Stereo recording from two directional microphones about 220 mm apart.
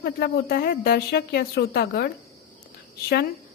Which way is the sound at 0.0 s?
45° left (ahead or behind).